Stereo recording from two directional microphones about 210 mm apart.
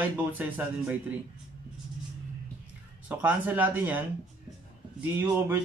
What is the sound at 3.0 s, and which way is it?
A man's voice, 5° right (ahead or behind).